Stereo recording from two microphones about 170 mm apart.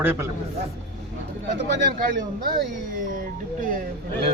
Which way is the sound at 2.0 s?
55° right (ahead or behind).